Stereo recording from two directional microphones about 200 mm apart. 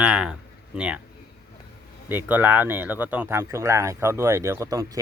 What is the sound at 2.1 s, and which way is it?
Speech, 10° right (ahead or behind).